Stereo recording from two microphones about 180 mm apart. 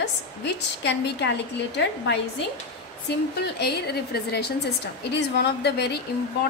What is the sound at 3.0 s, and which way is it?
A woman's voice, 70° left (ahead or behind).